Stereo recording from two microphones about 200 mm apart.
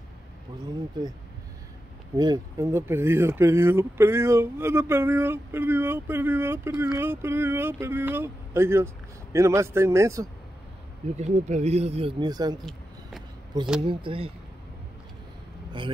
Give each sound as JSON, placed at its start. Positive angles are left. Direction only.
{"t": 2.1, "sound": "speech", "side_deg": -20}
{"t": 11.1, "sound": "speech", "side_deg": -35}
{"t": 13.8, "sound": "speech", "side_deg": -25}